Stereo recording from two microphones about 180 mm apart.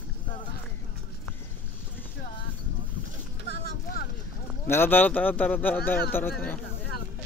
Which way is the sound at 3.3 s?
60° left (ahead or behind).